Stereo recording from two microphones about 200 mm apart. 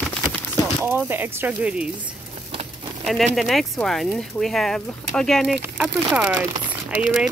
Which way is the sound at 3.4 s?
Centre (ahead or behind).